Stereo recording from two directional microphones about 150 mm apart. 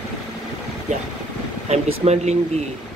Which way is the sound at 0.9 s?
55° right (ahead or behind).